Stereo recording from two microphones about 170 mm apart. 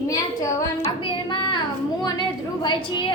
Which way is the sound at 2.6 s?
25° left (ahead or behind).